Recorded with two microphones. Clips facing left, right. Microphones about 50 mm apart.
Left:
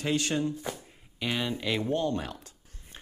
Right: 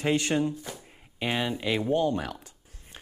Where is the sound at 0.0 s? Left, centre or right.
Right.